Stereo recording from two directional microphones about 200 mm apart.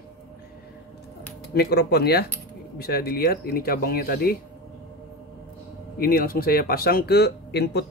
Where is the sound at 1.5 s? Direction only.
55° left (ahead or behind).